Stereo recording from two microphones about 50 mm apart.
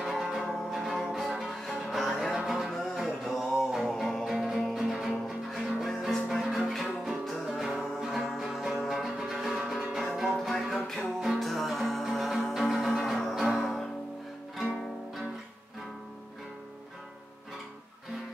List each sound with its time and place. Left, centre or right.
0.1 s music: centre